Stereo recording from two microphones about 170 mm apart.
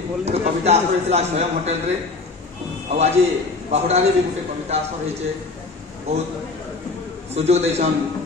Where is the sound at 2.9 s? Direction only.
40° right (ahead or behind).